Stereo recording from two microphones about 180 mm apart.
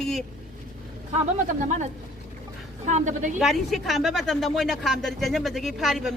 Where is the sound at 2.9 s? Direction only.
40° right (ahead or behind).